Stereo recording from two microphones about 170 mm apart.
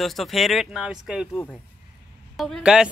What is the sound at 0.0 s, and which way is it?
Speech, centre (ahead or behind).